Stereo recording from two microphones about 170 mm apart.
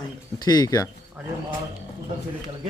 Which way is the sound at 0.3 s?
25° left (ahead or behind).